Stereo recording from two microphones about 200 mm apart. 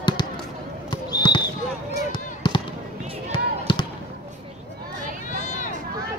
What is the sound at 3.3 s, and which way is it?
Basketball bounce, 25° left (ahead or behind).